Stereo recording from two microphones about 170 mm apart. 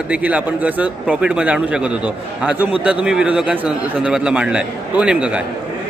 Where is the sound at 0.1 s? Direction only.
10° right (ahead or behind).